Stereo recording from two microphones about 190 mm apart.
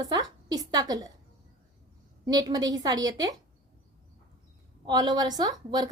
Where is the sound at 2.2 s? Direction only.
20° right (ahead or behind).